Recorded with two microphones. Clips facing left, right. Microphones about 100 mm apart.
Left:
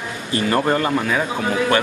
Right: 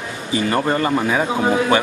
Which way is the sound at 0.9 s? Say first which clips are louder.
Right 2 dB; 20° right (ahead or behind).